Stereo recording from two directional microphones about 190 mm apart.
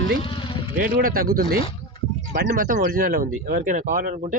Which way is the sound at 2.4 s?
50° right (ahead or behind).